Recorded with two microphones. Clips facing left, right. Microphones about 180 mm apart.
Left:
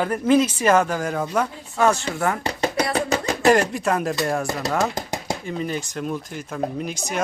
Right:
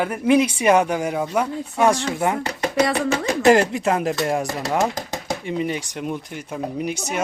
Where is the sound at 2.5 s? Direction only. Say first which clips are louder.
Right 2 dB; 35° left (ahead or behind).